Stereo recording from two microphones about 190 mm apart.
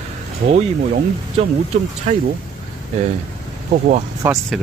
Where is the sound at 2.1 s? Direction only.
40° right (ahead or behind).